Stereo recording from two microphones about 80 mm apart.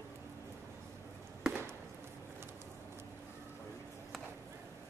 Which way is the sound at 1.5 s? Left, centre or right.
Right.